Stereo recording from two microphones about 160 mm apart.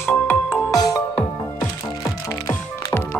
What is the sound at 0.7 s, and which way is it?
Music, 20° left (ahead or behind).